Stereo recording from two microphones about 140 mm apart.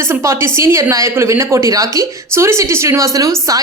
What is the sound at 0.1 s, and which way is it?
A woman's voice, 20° right (ahead or behind).